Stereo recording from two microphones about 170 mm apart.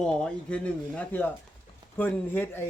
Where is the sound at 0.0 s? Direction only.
5° left (ahead or behind).